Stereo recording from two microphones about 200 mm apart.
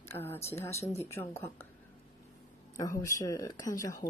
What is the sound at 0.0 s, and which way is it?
Speech, 10° left (ahead or behind).